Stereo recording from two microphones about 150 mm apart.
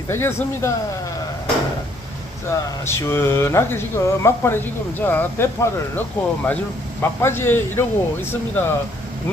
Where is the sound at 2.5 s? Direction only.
15° left (ahead or behind).